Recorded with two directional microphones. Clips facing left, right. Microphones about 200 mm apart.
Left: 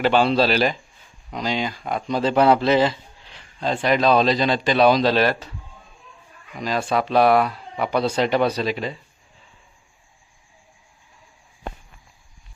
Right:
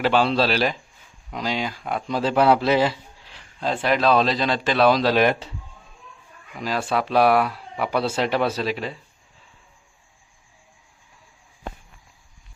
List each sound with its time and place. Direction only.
0.0 s speech: centre (ahead or behind)
5.1 s speech: 15° right (ahead or behind)
6.6 s speech: 5° right (ahead or behind)